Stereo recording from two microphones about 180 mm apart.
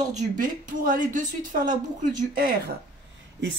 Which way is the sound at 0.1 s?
45° right (ahead or behind).